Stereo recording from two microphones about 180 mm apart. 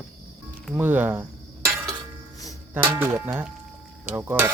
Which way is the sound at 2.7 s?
10° right (ahead or behind).